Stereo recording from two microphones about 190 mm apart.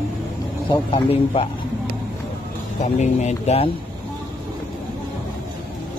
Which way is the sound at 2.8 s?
40° left (ahead or behind).